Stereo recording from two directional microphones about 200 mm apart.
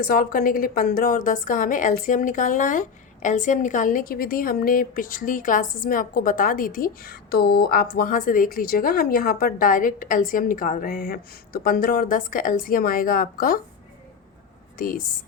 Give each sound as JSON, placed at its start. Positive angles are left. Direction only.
{"t": 0.1, "sound": "a woman's voice", "side_deg": 45}
{"t": 14.8, "sound": "a woman's voice", "side_deg": 45}